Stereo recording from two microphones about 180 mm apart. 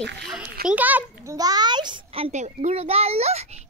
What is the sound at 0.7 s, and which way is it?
Speech, 10° right (ahead or behind).